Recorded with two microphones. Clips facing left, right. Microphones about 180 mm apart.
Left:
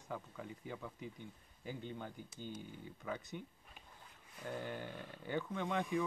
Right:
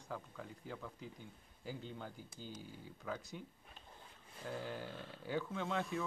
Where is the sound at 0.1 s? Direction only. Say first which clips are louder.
Left 1 dB; 5° left (ahead or behind).